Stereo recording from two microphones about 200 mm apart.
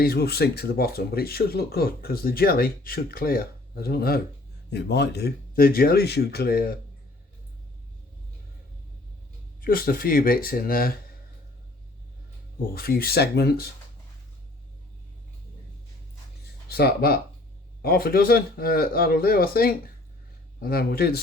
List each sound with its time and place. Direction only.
0.0 s speech: 50° left (ahead or behind)
9.6 s speech: 45° left (ahead or behind)
12.7 s speech: 50° left (ahead or behind)
16.6 s speech: 50° left (ahead or behind)